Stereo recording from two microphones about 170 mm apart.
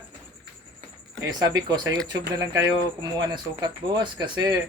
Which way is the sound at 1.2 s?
20° right (ahead or behind).